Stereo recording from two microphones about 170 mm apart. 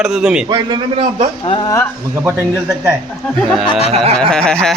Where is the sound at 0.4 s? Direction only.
25° right (ahead or behind).